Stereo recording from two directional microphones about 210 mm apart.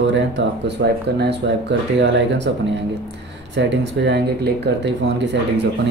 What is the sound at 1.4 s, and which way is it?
Speech, 55° right (ahead or behind).